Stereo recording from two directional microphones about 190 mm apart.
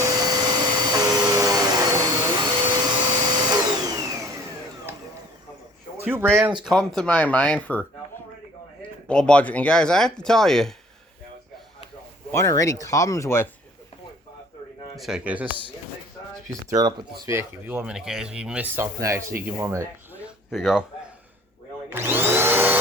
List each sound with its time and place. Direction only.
0.0 s vacuum cleaner: 20° right (ahead or behind)
6.0 s speech: 10° right (ahead or behind)
6.7 s speech: 5° left (ahead or behind)
9.0 s speech: 5° left (ahead or behind)
12.3 s speech: 15° left (ahead or behind)
14.9 s speech: 5° right (ahead or behind)
16.5 s speech: 20° right (ahead or behind)
20.5 s speech: centre (ahead or behind)
21.8 s vacuum cleaner: 10° right (ahead or behind)